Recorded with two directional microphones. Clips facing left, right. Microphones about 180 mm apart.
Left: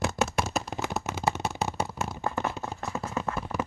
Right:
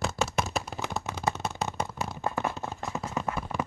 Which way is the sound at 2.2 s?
15° right (ahead or behind).